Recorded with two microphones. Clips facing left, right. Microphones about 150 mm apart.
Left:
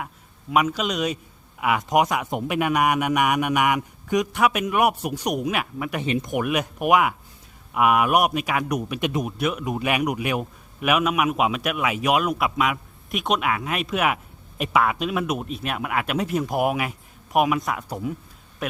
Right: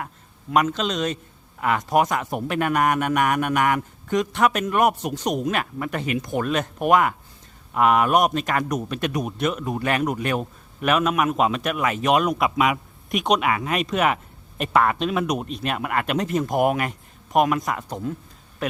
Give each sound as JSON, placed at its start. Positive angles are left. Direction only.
{"t": 0.5, "sound": "a man's voice", "side_deg": 5}
{"t": 6.1, "sound": "speech", "side_deg": 30}
{"t": 6.3, "sound": "a man's voice", "side_deg": 10}
{"t": 9.2, "sound": "a man's voice", "side_deg": 5}